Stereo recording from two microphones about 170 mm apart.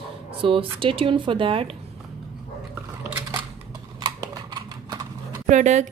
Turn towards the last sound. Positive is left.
turn(degrees=-45)  # may be behind; listen again after turning